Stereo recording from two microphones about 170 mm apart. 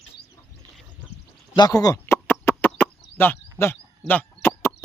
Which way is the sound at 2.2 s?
5° left (ahead or behind).